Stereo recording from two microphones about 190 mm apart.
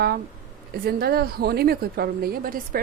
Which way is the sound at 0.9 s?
55° right (ahead or behind).